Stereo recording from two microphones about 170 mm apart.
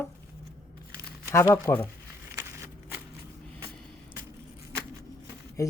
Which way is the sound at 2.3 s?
15° right (ahead or behind).